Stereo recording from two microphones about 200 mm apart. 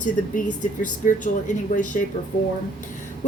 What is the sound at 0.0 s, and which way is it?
A woman's voice, 40° left (ahead or behind).